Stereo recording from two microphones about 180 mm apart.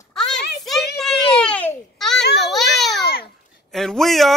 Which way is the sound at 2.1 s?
70° left (ahead or behind).